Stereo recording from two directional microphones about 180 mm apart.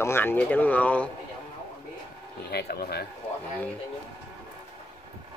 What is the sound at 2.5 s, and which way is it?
Speech, 65° left (ahead or behind).